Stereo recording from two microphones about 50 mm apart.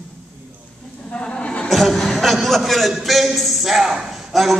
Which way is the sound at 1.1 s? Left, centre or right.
Left.